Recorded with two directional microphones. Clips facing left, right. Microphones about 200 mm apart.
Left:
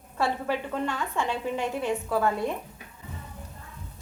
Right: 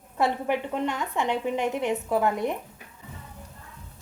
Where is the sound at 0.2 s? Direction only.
20° right (ahead or behind).